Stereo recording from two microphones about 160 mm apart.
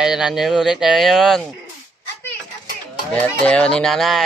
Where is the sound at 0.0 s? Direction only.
5° right (ahead or behind).